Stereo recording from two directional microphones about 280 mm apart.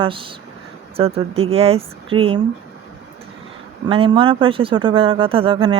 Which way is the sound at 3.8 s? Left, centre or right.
Centre.